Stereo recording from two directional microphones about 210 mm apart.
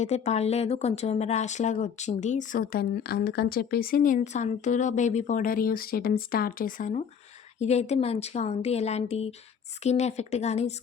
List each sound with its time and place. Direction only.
0.0 s speech: 30° left (ahead or behind)